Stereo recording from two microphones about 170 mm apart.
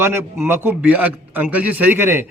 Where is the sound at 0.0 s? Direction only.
15° right (ahead or behind).